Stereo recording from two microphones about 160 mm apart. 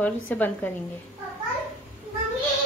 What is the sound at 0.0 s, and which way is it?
Speech, 10° left (ahead or behind).